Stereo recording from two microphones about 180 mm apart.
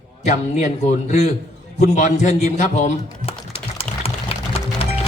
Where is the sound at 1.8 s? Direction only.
40° left (ahead or behind).